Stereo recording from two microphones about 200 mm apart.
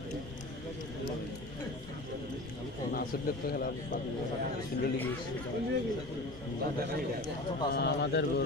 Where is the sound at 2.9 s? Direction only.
50° left (ahead or behind).